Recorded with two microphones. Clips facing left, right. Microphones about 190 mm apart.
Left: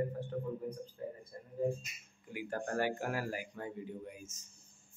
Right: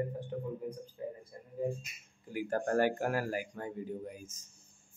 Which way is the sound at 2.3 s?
45° right (ahead or behind).